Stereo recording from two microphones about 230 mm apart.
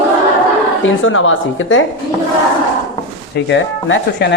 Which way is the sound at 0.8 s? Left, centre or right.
Left.